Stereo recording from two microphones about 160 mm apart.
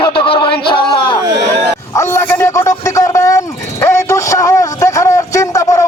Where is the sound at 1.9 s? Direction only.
15° left (ahead or behind).